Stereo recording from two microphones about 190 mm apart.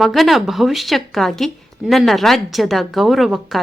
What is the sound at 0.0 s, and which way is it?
A woman's voice, centre (ahead or behind).